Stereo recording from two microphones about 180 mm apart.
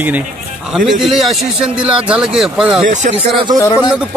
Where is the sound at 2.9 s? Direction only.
45° right (ahead or behind).